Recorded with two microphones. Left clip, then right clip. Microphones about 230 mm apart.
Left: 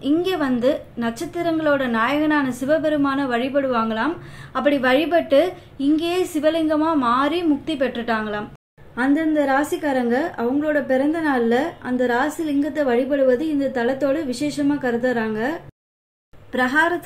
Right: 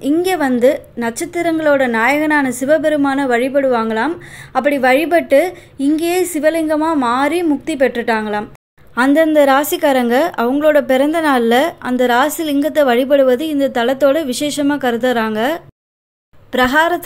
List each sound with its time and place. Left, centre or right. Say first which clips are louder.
0.0 s a woman's voice: right 5 dB; right
8.9 s a woman's voice: right 8 dB; right